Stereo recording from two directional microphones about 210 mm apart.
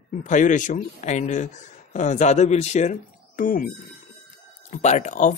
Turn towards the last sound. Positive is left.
turn(degrees=35)  # may be behind; listen again after turning